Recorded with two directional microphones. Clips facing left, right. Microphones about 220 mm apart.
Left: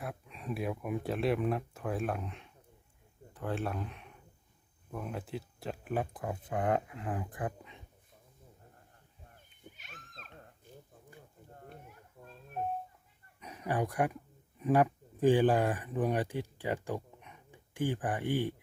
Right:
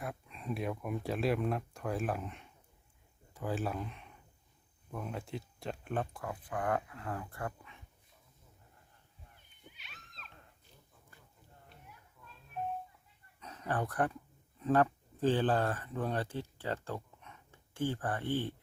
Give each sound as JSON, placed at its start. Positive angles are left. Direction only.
{"t": 0.0, "sound": "speech", "side_deg": 0}
{"t": 6.1, "sound": "speech", "side_deg": 25}
{"t": 9.3, "sound": "a sound", "side_deg": 45}
{"t": 13.4, "sound": "speech", "side_deg": 15}